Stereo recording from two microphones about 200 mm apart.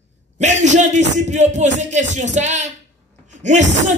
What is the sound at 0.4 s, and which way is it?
Speech, 35° right (ahead or behind).